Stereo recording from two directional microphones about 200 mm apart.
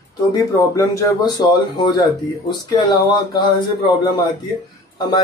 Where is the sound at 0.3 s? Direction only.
20° left (ahead or behind).